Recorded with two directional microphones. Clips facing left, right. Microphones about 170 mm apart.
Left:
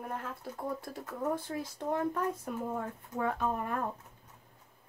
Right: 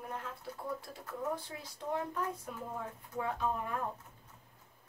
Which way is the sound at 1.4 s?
50° left (ahead or behind).